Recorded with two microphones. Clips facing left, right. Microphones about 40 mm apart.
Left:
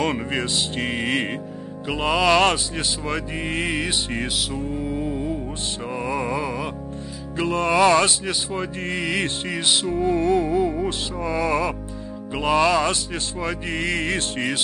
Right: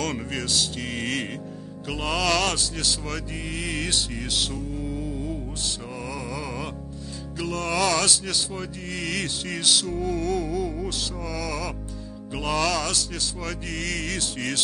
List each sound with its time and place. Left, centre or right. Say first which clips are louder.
0.0 s music: left 5 dB; left
3.7 s music: left 3 dB; left
4.1 s music: left 3 dB; left
4.7 s music: left 5 dB; left